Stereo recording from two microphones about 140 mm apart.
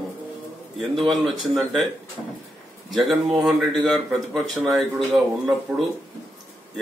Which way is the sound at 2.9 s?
Centre (ahead or behind).